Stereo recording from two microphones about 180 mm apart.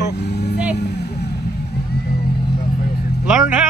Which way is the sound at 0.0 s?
70° left (ahead or behind).